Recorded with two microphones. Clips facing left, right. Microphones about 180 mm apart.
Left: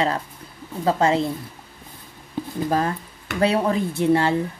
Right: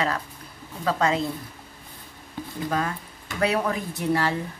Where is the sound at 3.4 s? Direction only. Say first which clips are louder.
Left 4 dB; 30° left (ahead or behind).